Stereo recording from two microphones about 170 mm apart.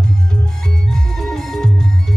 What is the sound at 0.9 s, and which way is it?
Music, centre (ahead or behind).